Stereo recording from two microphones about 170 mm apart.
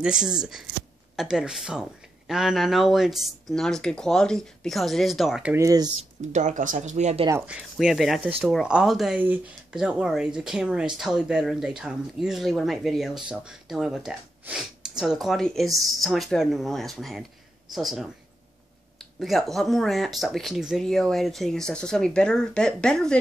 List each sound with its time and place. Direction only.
0.0 s speech: 5° right (ahead or behind)
5.6 s speech: 20° right (ahead or behind)
6.3 s speech: 45° right (ahead or behind)
7.2 s speech: 10° right (ahead or behind)
19.1 s speech: centre (ahead or behind)